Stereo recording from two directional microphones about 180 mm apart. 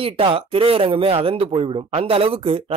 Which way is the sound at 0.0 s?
30° right (ahead or behind).